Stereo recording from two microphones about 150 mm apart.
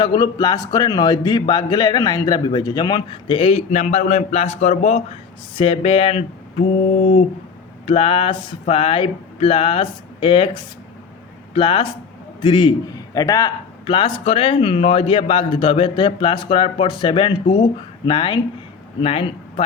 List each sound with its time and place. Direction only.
0.0 s a man's voice: 30° left (ahead or behind)
13.8 s a man's voice: 35° left (ahead or behind)